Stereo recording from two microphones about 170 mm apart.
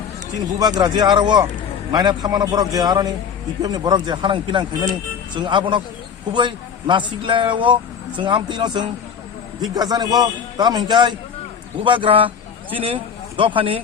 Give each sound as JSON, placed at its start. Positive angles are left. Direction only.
{"t": 0.6, "sound": "a man's voice", "side_deg": -25}